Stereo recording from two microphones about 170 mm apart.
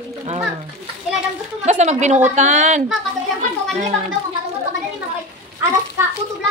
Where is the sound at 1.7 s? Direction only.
45° right (ahead or behind).